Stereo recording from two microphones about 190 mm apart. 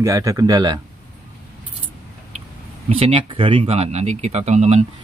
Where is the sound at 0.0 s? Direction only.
15° right (ahead or behind).